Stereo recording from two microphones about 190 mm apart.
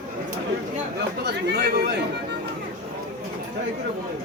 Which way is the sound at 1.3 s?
60° right (ahead or behind).